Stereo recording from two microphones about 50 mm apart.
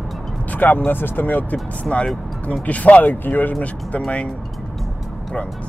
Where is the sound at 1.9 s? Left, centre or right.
Left.